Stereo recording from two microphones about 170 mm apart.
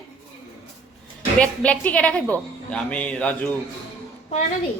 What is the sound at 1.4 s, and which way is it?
A woman's voice, 10° left (ahead or behind).